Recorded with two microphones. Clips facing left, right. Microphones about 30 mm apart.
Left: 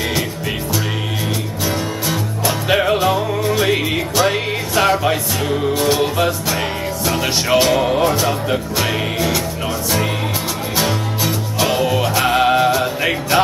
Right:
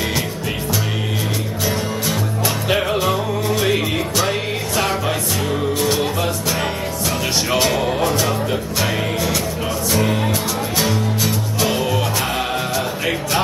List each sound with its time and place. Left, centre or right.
2.0 s music: centre
7.1 s music: centre
11.2 s music: centre
12.4 s music: left